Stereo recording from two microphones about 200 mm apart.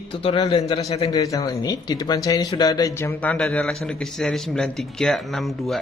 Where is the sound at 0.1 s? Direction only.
25° left (ahead or behind).